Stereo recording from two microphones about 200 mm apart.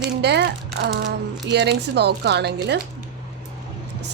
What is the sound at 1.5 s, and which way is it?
A woman's voice, 55° right (ahead or behind).